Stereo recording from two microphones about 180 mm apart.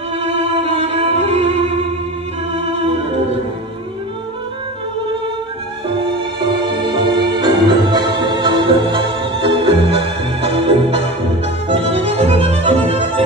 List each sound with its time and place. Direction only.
0.2 s music: 35° right (ahead or behind)
6.4 s music: 25° right (ahead or behind)